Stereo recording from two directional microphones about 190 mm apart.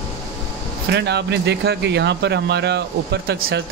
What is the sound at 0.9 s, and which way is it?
Speech, 65° right (ahead or behind).